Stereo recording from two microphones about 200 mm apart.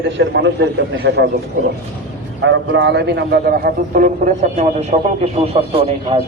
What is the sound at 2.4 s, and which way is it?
A man's voice, 60° right (ahead or behind).